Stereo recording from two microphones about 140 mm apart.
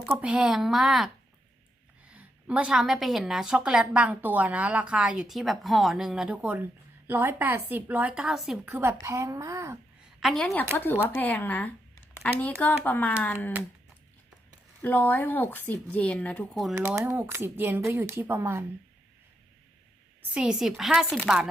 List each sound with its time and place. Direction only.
0.1 s speech: 5° right (ahead or behind)
2.1 s a woman's voice: 10° right (ahead or behind)
8.7 s a woman's voice: 15° right (ahead or behind)
10.2 s speech: centre (ahead or behind)
14.8 s speech: 15° left (ahead or behind)
16.6 s speech: centre (ahead or behind)
16.8 s a woman's voice: 15° right (ahead or behind)
20.3 s speech: 5° right (ahead or behind)